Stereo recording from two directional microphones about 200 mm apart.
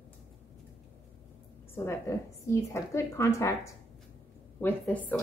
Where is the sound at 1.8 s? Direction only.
15° left (ahead or behind).